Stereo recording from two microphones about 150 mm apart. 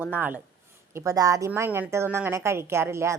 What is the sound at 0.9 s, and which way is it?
A woman's voice, 25° right (ahead or behind).